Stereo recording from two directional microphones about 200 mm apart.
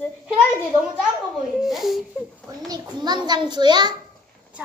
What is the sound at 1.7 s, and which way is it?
Baby cry, centre (ahead or behind).